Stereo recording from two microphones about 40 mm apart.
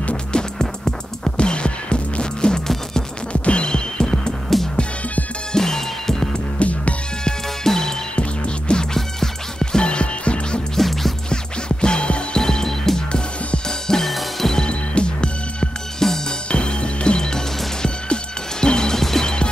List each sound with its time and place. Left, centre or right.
0.0 s music: left
5.5 s music: centre
6.6 s music: left
7.2 s music: centre
8.2 s music: left
8.9 s music: centre
10.8 s music: centre
11.8 s music: left
13.1 s music: left
14.0 s music: centre
14.5 s music: left
16.0 s music: centre
16.4 s music: left; by 19.3 s centre